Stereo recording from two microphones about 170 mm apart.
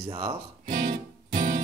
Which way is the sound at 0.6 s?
55° right (ahead or behind).